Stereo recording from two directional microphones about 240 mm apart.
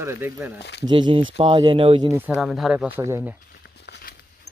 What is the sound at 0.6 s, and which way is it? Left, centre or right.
Speech, left.